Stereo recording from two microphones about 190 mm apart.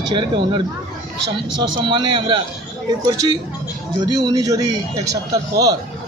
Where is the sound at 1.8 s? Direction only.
25° right (ahead or behind).